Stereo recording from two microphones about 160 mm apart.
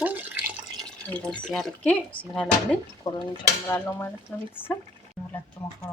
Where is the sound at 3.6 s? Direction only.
15° left (ahead or behind).